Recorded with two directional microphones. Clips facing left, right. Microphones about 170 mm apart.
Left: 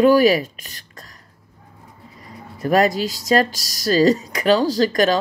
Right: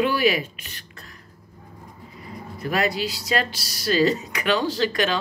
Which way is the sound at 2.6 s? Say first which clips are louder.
Left 7 dB; 40° left (ahead or behind).